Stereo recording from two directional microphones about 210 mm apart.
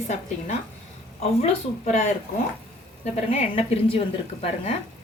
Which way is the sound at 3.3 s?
30° left (ahead or behind).